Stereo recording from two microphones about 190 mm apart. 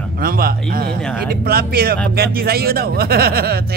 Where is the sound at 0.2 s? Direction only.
50° right (ahead or behind).